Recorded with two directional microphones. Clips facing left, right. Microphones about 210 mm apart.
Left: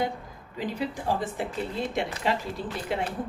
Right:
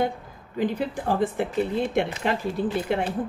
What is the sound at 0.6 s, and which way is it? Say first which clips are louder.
Speech: right 5 dB; 55° right (ahead or behind).